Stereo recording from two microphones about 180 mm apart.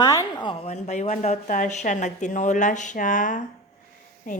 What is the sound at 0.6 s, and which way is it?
A woman's voice, 40° left (ahead or behind).